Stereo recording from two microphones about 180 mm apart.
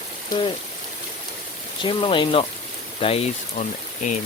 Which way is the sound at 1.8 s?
25° left (ahead or behind).